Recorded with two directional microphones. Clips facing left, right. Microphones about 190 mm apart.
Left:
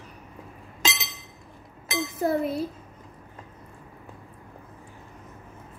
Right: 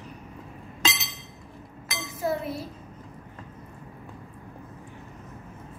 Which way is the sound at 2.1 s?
55° left (ahead or behind).